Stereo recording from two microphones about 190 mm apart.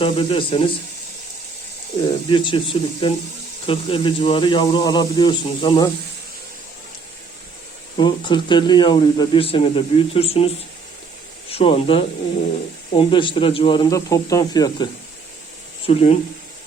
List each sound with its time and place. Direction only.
0.0 s speech: 30° left (ahead or behind)
2.3 s speech: 25° left (ahead or behind)
7.9 s speech: 25° left (ahead or behind)
15.9 s speech: 35° left (ahead or behind)